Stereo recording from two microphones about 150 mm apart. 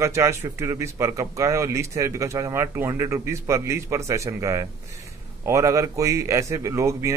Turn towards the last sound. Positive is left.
turn(degrees=-20)  # may be behind; listen again after turning